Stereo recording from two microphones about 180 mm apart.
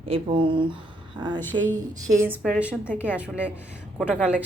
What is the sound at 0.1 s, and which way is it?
A woman's voice, 30° right (ahead or behind).